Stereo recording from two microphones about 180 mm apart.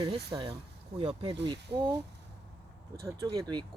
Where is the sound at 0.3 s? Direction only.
25° right (ahead or behind).